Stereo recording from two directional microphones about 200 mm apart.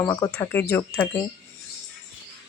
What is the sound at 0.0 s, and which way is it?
Speech, 15° left (ahead or behind).